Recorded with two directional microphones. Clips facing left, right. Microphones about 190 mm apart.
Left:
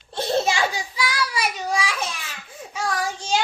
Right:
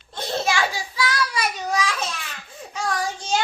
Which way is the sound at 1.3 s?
10° left (ahead or behind).